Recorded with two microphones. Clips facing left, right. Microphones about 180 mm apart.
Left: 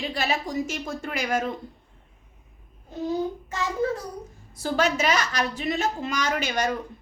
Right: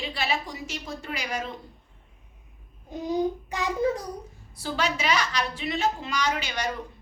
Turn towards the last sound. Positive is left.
turn(degrees=50)  # may be behind; listen again after turning